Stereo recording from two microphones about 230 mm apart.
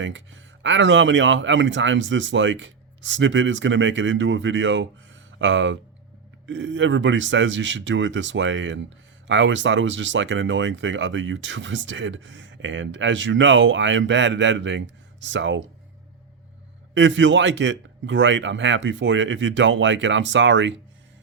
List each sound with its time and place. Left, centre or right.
0.0 s speech: right
16.9 s speech: right